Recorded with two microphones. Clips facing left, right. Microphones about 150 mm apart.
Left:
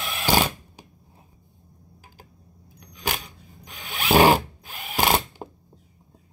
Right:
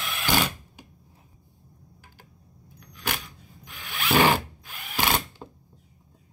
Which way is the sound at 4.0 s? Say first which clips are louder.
Left 4 dB; 40° left (ahead or behind).